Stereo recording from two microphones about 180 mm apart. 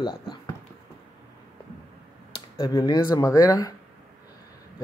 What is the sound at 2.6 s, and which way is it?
Speech, 25° left (ahead or behind).